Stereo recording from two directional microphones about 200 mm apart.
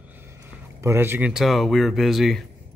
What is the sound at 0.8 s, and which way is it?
A man's voice, 10° right (ahead or behind).